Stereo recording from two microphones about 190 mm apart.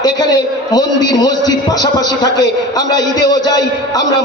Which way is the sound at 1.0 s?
20° left (ahead or behind).